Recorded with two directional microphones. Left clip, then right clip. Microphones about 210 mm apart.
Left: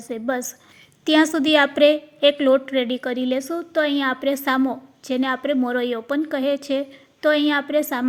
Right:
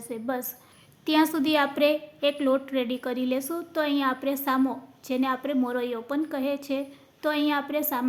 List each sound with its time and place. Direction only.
0.1 s a woman's voice: 25° left (ahead or behind)